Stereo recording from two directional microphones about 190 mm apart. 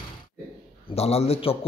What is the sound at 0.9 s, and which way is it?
Speech, 35° left (ahead or behind).